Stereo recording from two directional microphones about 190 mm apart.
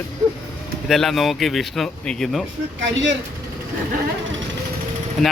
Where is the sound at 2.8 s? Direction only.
70° right (ahead or behind).